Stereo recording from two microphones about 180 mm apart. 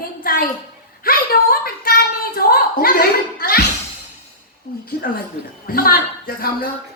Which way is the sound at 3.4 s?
55° left (ahead or behind).